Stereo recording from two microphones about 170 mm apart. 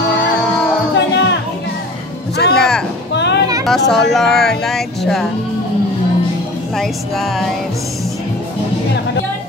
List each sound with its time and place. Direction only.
0.9 s music: 90° left
2.5 s music: 5° left (ahead or behind)
3.1 s music: 90° left
3.6 s speech: centre (ahead or behind)
6.8 s speech: centre (ahead or behind)